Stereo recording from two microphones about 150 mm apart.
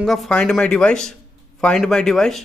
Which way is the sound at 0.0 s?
Centre (ahead or behind).